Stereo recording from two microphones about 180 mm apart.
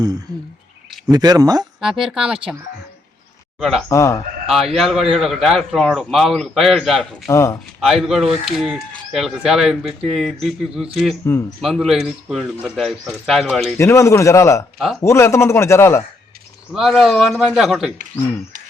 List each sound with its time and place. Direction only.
0.3 s speech: 5° left (ahead or behind)
1.1 s speech: 20° right (ahead or behind)
1.8 s speech: centre (ahead or behind)
3.6 s speech: centre (ahead or behind)
3.8 s speech: 15° left (ahead or behind)
4.4 s speech: centre (ahead or behind)
7.3 s speech: 15° left (ahead or behind)
7.8 s speech: centre (ahead or behind)
13.7 s speech: 15° left (ahead or behind)
16.7 s speech: centre (ahead or behind)